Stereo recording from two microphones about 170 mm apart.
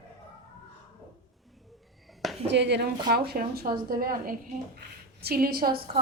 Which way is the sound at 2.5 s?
90° right.